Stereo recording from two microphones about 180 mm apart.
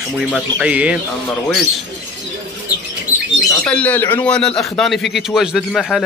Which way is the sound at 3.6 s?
5° left (ahead or behind).